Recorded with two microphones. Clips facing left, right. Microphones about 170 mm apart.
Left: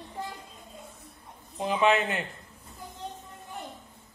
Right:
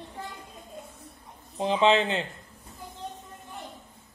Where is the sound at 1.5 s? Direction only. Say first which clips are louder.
Right 2 dB; 25° right (ahead or behind).